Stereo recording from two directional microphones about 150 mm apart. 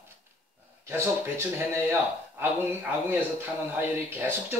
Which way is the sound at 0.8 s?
15° right (ahead or behind).